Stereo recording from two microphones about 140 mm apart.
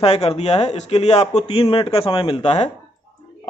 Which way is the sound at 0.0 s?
45° left (ahead or behind).